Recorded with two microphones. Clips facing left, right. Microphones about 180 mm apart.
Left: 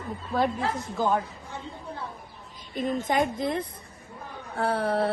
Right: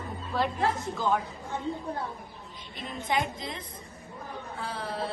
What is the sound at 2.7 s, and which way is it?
A woman's voice, 45° left (ahead or behind).